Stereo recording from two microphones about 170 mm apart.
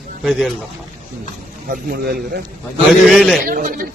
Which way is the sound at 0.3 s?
Centre (ahead or behind).